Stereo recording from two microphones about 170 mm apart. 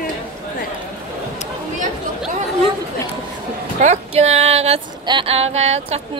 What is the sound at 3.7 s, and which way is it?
Speech, 40° right (ahead or behind).